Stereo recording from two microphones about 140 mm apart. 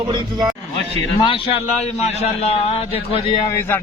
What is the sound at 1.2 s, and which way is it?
A man's voice, 40° left (ahead or behind).